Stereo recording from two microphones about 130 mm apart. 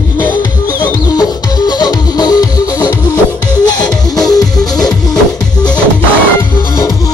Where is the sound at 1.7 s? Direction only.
30° left (ahead or behind).